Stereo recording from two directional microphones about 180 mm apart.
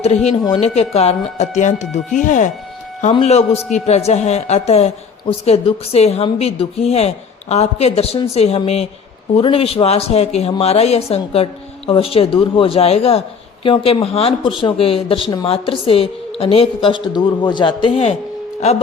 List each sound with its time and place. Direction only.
0.5 s a woman's voice: 35° left (ahead or behind)